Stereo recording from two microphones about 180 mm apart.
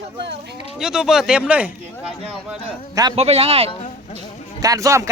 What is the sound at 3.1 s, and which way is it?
Speech, 35° right (ahead or behind).